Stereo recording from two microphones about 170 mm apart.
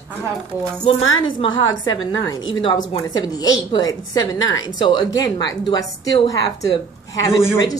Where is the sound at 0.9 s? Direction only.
30° left (ahead or behind).